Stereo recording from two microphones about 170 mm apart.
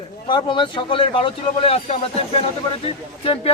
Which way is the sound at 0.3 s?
30° left (ahead or behind).